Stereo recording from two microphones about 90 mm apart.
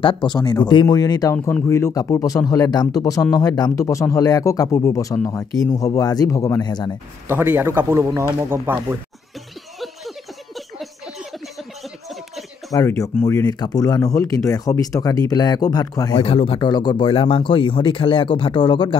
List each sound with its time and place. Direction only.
0.0 s speech: 65° left (ahead or behind); by 1.3 s 45° left (ahead or behind)
1.3 s speech: 30° left (ahead or behind)
5.8 s speech: 40° left (ahead or behind)
6.6 s speech: 55° left (ahead or behind)
7.2 s a man's voice: 20° right (ahead or behind)
9.8 s a sound: centre (ahead or behind)
12.8 s speech: 35° left (ahead or behind)
13.5 s speech: 45° left (ahead or behind)
16.3 s speech: 90° left; by 18.9 s 70° left (ahead or behind)